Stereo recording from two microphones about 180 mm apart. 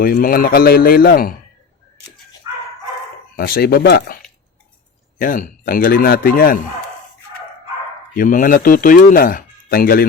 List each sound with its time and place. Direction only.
0.0 s a man's voice: 50° left (ahead or behind)
3.3 s a man's voice: 55° left (ahead or behind)
5.2 s speech: 50° left (ahead or behind)
8.1 s speech: 50° left (ahead or behind)